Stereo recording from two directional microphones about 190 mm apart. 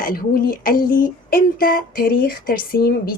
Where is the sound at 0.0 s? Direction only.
45° left (ahead or behind).